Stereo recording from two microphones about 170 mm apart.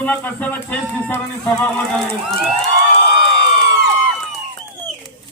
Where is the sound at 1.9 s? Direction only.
Centre (ahead or behind).